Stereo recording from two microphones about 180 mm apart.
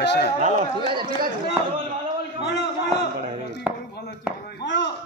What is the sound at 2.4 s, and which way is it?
Speech, 70° left (ahead or behind).